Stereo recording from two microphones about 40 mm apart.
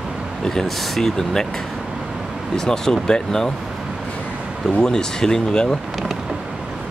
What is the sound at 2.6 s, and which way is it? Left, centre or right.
Speech, centre.